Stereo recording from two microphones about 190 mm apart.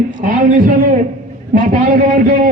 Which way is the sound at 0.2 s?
45° right (ahead or behind).